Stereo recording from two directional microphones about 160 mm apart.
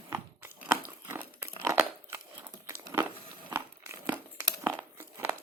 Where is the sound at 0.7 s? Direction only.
15° right (ahead or behind).